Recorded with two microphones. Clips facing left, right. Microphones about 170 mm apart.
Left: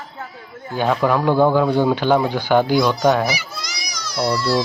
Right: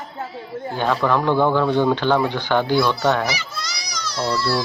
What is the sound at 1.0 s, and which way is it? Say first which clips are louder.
Speech: left 2 dB; 10° left (ahead or behind).